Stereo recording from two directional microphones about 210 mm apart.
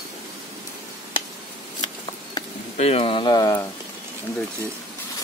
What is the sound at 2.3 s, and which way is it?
Speech, 30° left (ahead or behind).